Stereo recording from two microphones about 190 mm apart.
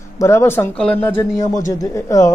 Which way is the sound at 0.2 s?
15° left (ahead or behind).